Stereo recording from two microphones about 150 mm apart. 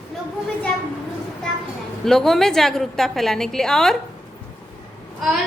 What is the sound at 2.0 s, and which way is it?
A woman's voice, 5° left (ahead or behind).